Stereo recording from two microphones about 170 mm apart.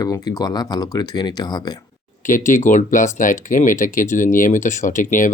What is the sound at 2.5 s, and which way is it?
Speech, 50° left (ahead or behind).